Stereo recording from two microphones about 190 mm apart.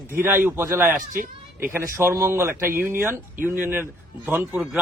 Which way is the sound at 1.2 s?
45° right (ahead or behind).